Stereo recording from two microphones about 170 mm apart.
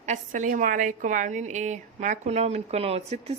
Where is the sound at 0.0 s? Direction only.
45° right (ahead or behind).